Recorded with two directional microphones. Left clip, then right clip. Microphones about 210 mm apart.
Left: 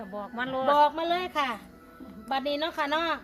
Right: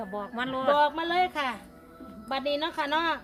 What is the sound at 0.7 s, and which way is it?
A woman's voice, 5° left (ahead or behind).